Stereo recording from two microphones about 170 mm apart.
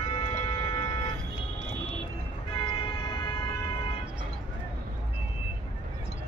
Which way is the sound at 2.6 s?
30° left (ahead or behind).